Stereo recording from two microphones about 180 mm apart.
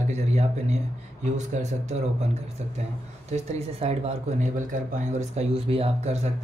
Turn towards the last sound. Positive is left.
turn(degrees=-35)  # may be behind; listen again after turning